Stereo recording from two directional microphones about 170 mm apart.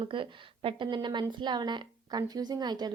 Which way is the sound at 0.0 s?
30° right (ahead or behind).